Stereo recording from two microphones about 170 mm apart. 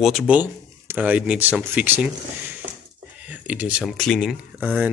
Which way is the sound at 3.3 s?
10° right (ahead or behind).